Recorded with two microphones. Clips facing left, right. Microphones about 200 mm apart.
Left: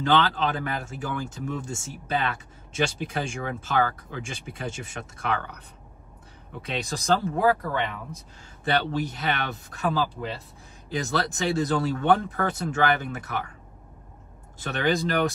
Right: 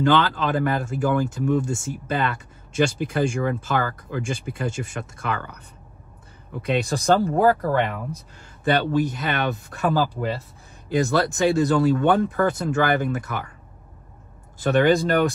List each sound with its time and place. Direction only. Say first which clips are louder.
0.0 s speech: right 3 dB; 50° right (ahead or behind)
6.6 s speech: right 8 dB; 55° right (ahead or behind)
14.6 s speech: right 7 dB; 50° right (ahead or behind)